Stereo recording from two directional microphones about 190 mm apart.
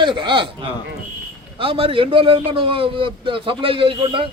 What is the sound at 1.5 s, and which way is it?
A man's voice, 30° right (ahead or behind).